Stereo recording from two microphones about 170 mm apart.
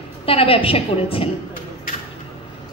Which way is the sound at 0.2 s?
35° left (ahead or behind).